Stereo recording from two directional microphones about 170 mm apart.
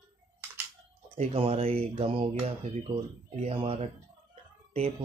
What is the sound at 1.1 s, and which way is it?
Speech, 35° right (ahead or behind).